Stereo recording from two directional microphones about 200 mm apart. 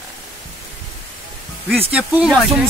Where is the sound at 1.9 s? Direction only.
5° right (ahead or behind).